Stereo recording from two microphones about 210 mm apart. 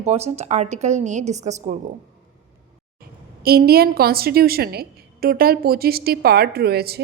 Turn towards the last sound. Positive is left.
turn(degrees=-50)  # may be behind; listen again after turning